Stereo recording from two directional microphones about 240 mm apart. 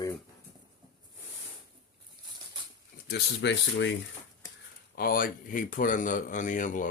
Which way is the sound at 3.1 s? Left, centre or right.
Left.